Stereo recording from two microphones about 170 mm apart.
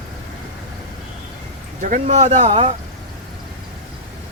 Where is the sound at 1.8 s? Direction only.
45° right (ahead or behind).